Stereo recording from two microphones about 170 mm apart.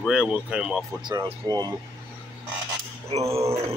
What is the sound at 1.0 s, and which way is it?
Speech, 25° right (ahead or behind).